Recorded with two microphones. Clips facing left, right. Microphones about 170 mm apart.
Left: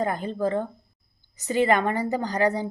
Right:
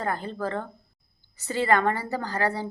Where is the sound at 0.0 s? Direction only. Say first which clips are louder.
Left 4 dB; 15° left (ahead or behind).